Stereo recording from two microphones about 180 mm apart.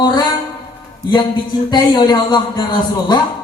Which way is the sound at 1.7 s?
25° left (ahead or behind).